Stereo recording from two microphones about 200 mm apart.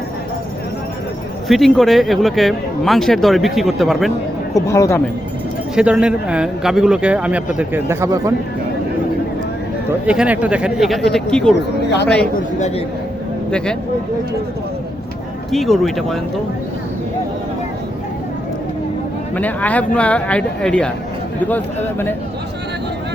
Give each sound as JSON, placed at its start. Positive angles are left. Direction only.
{"t": 1.5, "sound": "speech", "side_deg": 0}
{"t": 4.5, "sound": "a man's voice", "side_deg": 15}
{"t": 5.7, "sound": "speech", "side_deg": -5}
{"t": 10.1, "sound": "speech", "side_deg": -5}
{"t": 12.5, "sound": "a man's voice", "side_deg": 35}
{"t": 15.5, "sound": "speech", "side_deg": 0}
{"t": 19.4, "sound": "a man's voice", "side_deg": 10}